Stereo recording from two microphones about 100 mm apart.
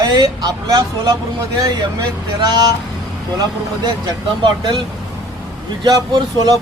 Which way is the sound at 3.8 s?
45° right (ahead or behind).